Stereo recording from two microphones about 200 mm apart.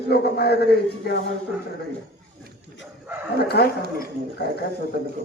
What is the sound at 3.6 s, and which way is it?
Speech, 50° left (ahead or behind).